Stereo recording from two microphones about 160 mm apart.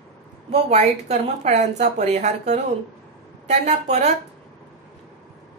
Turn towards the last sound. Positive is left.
turn(degrees=-45)  # may be behind; listen again after turning